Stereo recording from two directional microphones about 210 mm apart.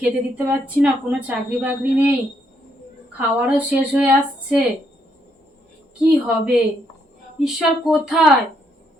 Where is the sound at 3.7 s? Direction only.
5° right (ahead or behind).